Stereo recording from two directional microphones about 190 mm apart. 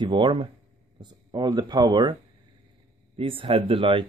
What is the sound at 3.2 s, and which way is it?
Speech, 30° right (ahead or behind).